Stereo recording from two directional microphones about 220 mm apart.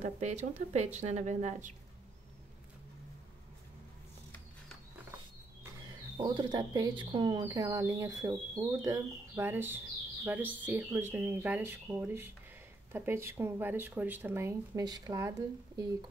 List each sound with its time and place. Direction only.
0.0 s a woman's voice: 30° right (ahead or behind)
6.1 s speech: 20° right (ahead or behind)